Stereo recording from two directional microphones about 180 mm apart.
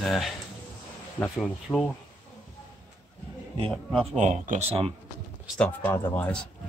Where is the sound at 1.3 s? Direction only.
Centre (ahead or behind).